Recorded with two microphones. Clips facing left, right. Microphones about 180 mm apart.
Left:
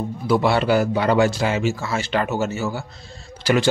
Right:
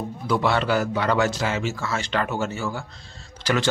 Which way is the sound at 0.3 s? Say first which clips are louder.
Left 4 dB; 10° left (ahead or behind).